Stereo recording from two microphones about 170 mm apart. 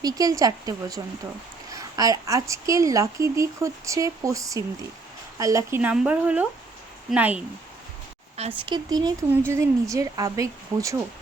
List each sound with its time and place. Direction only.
0.0 s a woman's voice: 20° right (ahead or behind)
8.4 s a woman's voice: 30° right (ahead or behind)